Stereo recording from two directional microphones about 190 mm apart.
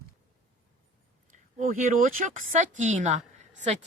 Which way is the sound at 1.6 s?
45° right (ahead or behind).